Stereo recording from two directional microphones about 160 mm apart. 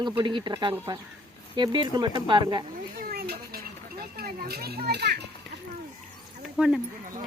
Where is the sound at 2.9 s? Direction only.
75° right (ahead or behind); by 5.2 s 90° right.